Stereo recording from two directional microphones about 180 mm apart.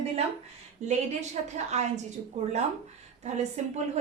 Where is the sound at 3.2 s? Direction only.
40° right (ahead or behind).